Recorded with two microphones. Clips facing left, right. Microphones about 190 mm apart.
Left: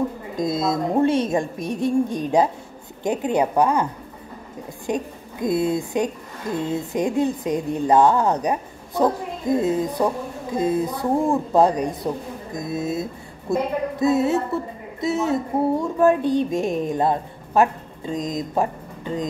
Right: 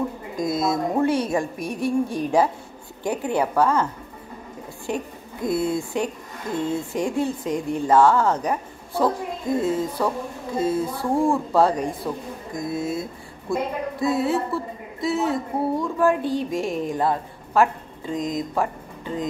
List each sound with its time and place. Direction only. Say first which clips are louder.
0.4 s a woman's voice: left 1 dB; 25° left (ahead or behind)